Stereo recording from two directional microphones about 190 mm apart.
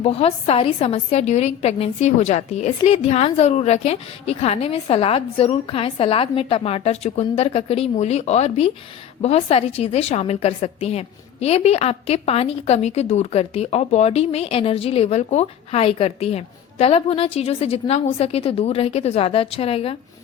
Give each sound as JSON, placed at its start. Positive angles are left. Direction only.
{"t": 0.0, "sound": "a woman's voice", "side_deg": 30}